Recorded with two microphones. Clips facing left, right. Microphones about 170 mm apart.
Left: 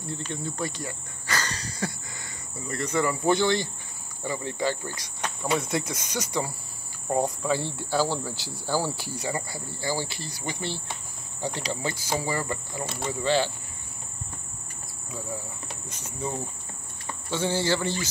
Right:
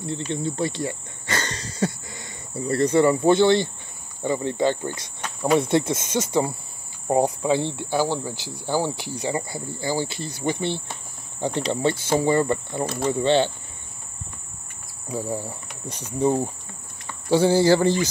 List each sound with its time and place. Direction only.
0.0 s cricket: 25° right (ahead or behind)
2.6 s speech: 35° right (ahead or behind)
11.4 s speech: 20° right (ahead or behind)
15.0 s speech: 35° right (ahead or behind)